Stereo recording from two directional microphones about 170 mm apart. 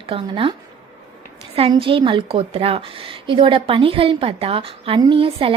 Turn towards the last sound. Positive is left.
turn(degrees=-30)  # may be behind; listen again after turning